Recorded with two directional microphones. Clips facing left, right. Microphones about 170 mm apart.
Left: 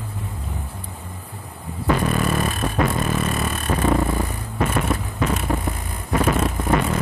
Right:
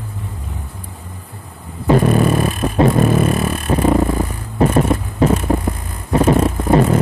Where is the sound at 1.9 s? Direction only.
30° right (ahead or behind).